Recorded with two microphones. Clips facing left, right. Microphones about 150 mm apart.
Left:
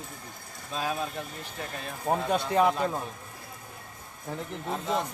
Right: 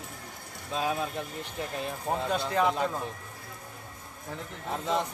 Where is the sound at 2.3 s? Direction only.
20° left (ahead or behind).